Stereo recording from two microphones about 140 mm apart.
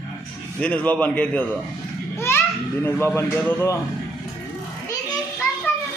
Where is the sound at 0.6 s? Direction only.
10° left (ahead or behind).